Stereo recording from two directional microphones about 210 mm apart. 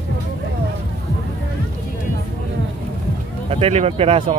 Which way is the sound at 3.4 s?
30° right (ahead or behind).